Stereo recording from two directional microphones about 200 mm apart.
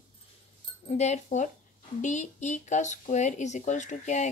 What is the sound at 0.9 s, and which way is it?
Speech, 35° left (ahead or behind).